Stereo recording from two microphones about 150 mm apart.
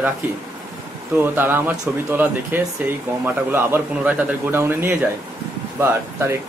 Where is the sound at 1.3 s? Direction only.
15° right (ahead or behind).